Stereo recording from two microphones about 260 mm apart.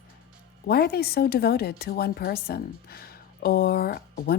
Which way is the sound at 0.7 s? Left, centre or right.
Left.